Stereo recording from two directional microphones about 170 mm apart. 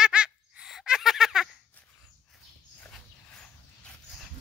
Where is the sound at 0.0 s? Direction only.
5° right (ahead or behind).